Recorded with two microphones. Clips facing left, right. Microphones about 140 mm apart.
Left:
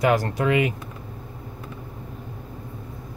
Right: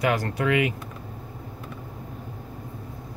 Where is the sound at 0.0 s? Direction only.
35° left (ahead or behind).